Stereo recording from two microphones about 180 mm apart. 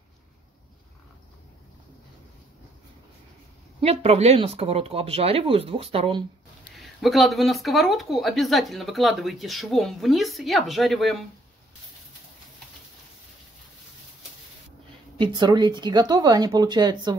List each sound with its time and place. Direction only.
3.8 s speech: 35° right (ahead or behind)
6.8 s speech: centre (ahead or behind)
15.1 s speech: 25° right (ahead or behind)